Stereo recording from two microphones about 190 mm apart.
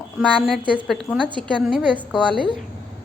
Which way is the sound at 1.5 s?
Centre (ahead or behind).